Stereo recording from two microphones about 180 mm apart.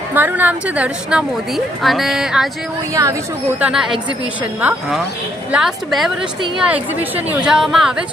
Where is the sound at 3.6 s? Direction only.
5° right (ahead or behind).